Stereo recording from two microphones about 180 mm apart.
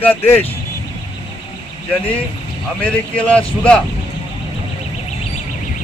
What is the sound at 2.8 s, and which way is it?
Speech, 5° left (ahead or behind).